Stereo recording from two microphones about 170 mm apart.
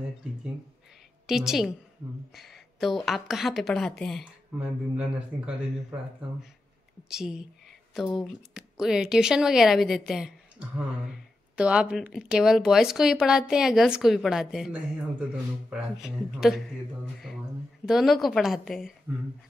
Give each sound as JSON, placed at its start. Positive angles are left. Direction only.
{"t": 1.2, "sound": "a woman's voice", "side_deg": 0}
{"t": 7.1, "sound": "speech", "side_deg": -5}